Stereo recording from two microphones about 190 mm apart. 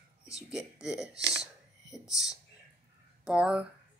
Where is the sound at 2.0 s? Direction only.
15° left (ahead or behind).